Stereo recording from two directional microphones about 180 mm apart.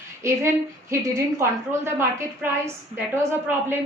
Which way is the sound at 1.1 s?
15° right (ahead or behind).